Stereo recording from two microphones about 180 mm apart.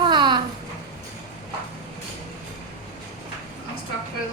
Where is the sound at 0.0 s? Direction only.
25° right (ahead or behind).